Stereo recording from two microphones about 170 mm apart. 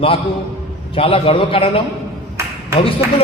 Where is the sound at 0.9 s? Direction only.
35° left (ahead or behind).